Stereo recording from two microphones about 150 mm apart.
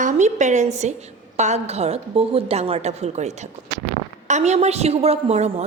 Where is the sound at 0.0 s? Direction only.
50° right (ahead or behind).